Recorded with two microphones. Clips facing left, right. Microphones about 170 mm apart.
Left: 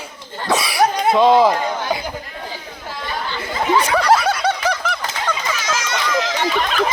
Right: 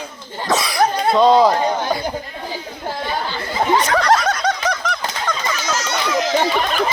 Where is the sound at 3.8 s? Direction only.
10° left (ahead or behind).